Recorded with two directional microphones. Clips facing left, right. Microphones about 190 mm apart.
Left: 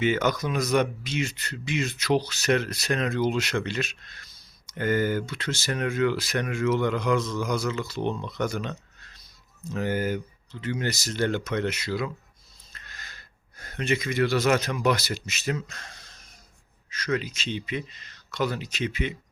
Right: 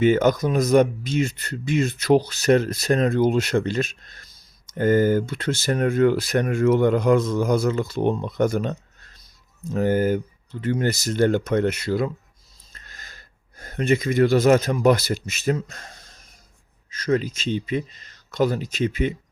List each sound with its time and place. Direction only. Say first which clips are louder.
0.0 s speech: right 7 dB; 50° right (ahead or behind)
13.6 s speech: right 6 dB; 50° right (ahead or behind)
17.1 s speech: right 6 dB; 45° right (ahead or behind)